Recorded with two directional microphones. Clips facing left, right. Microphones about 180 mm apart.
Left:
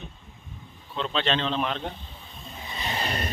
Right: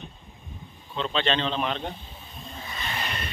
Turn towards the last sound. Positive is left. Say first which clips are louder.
# left 4 dB
turn(degrees=35)  # may be behind; listen again after turning